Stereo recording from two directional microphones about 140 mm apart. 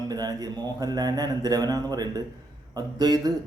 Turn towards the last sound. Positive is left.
turn(degrees=-30)  # may be behind; listen again after turning